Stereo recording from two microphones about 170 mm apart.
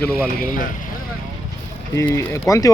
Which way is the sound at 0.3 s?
55° left (ahead or behind).